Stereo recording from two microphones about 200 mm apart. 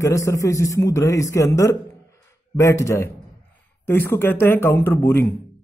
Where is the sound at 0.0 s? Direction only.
15° left (ahead or behind).